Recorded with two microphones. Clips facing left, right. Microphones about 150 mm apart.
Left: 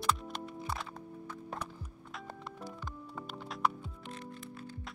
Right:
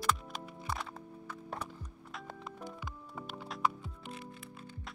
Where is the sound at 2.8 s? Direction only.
10° right (ahead or behind).